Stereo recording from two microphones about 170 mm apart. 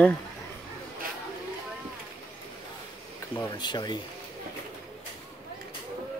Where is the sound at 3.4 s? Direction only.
25° left (ahead or behind).